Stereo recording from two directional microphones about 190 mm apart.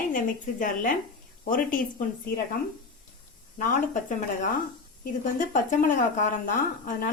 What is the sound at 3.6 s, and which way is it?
A woman's voice, 45° left (ahead or behind).